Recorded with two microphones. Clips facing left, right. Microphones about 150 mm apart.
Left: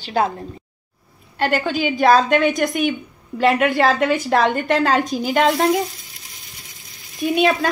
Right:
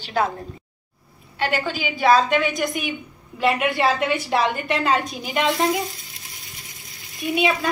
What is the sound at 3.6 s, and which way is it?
A woman's voice, 45° left (ahead or behind).